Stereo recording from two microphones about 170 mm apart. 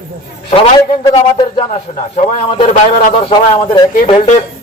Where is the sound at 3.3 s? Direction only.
25° left (ahead or behind).